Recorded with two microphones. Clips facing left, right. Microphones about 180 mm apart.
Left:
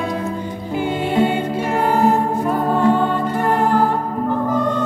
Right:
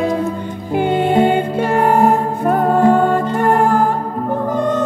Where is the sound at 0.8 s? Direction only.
55° right (ahead or behind).